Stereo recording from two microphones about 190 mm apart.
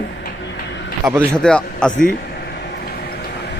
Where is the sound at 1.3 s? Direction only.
5° left (ahead or behind).